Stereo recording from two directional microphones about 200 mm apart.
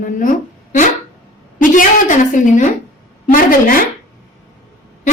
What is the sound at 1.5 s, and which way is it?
A woman's voice, 40° left (ahead or behind).